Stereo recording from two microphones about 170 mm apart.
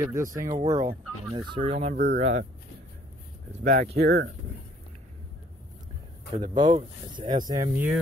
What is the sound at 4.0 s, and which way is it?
Speech, 75° right (ahead or behind).